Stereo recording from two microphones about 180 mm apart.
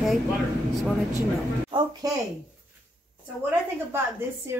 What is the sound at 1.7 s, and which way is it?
Speech, 25° right (ahead or behind).